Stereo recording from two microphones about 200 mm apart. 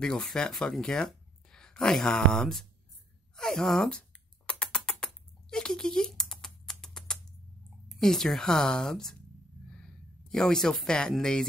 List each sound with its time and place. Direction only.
0.0 s a woman's voice: 5° left (ahead or behind)
4.5 s typing: 5° left (ahead or behind)
8.0 s a woman's voice: centre (ahead or behind)
10.2 s a woman's voice: 5° left (ahead or behind)